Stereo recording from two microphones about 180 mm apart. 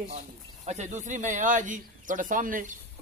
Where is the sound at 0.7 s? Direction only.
40° right (ahead or behind).